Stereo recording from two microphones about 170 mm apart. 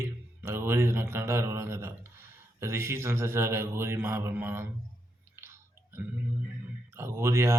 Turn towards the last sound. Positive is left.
turn(degrees=-15)  # may be behind; listen again after turning